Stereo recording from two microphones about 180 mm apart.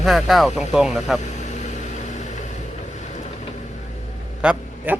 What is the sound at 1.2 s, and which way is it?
Vehicle, 40° left (ahead or behind).